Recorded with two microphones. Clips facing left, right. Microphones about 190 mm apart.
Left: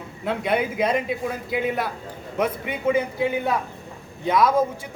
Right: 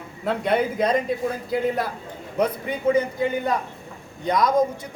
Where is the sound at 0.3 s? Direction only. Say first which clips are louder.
Right 1 dB; centre (ahead or behind).